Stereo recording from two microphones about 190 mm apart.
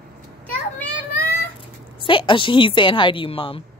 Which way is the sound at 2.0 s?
25° left (ahead or behind).